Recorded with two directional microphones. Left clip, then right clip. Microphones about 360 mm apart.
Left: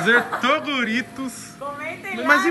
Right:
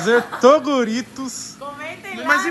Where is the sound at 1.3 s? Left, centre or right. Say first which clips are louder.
Even; centre.